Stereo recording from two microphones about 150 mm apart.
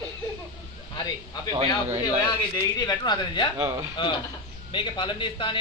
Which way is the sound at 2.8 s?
30° left (ahead or behind).